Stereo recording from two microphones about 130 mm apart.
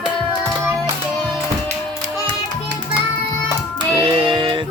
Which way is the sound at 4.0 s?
45° right (ahead or behind).